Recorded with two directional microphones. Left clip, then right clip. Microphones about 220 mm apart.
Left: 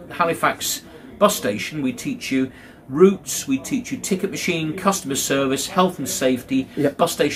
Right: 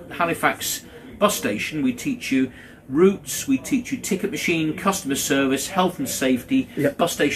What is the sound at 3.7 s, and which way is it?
Speech, 55° left (ahead or behind).